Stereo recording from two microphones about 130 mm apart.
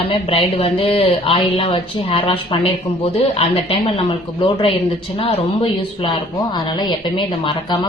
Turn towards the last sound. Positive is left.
turn(degrees=40)  # may be behind; listen again after turning